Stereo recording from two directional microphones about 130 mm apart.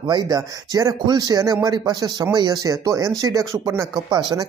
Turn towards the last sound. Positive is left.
turn(degrees=-35)  # may be behind; listen again after turning